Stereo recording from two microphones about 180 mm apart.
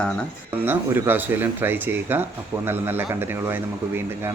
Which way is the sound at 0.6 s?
10° right (ahead or behind).